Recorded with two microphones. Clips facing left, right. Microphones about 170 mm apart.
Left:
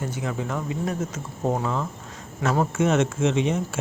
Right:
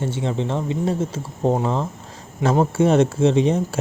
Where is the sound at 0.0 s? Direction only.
25° right (ahead or behind).